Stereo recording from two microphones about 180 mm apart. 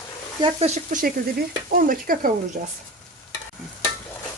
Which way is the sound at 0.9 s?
50° right (ahead or behind).